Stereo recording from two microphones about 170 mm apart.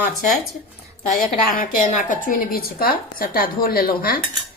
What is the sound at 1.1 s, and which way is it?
A woman's voice, 55° left (ahead or behind).